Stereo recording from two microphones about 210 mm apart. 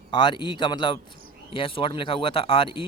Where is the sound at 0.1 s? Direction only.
20° left (ahead or behind).